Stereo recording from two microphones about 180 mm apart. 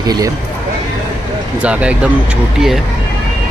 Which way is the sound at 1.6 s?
5° right (ahead or behind).